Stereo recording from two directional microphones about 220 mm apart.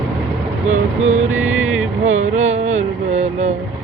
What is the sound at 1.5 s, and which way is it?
Vehicle, 70° right (ahead or behind).